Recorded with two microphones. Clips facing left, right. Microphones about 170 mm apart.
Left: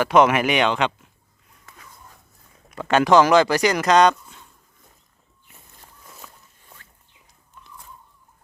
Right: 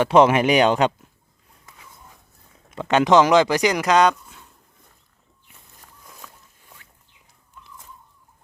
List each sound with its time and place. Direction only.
0.0 s speech: 30° right (ahead or behind)
1.6 s dog: 15° right (ahead or behind)
2.6 s speech: 20° right (ahead or behind)
6.1 s walk: 5° left (ahead or behind)